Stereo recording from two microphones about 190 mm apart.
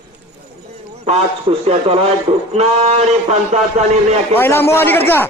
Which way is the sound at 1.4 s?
30° right (ahead or behind).